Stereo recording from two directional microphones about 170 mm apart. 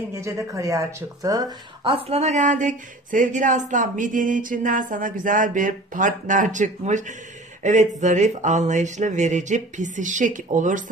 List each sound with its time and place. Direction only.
0.1 s speech: 15° right (ahead or behind)
1.9 s speech: 35° right (ahead or behind)